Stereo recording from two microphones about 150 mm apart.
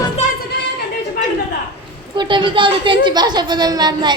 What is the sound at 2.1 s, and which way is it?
A child's voice, 30° right (ahead or behind).